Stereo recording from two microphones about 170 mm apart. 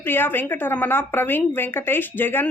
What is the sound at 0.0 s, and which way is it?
A woman's voice, 10° left (ahead or behind).